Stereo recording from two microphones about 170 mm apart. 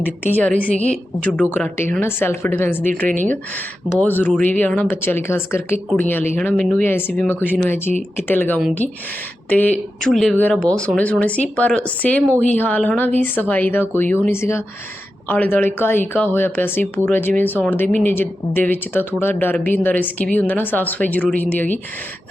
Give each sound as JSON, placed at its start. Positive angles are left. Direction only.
{"t": 0.0, "sound": "speech", "side_deg": 10}
{"t": 8.8, "sound": "speech", "side_deg": 45}
{"t": 9.5, "sound": "speech", "side_deg": 10}